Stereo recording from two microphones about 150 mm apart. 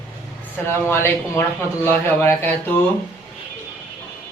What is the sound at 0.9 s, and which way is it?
Speech, 15° left (ahead or behind).